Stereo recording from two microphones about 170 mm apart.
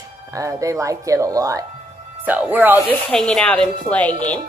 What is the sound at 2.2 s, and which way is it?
Speech, 10° right (ahead or behind).